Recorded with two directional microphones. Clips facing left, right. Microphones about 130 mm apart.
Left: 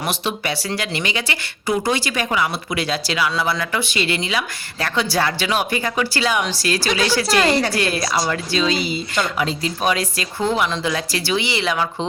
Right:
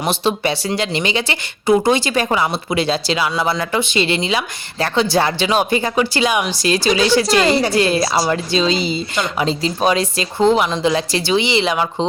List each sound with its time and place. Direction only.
0.0 s speech: 25° right (ahead or behind)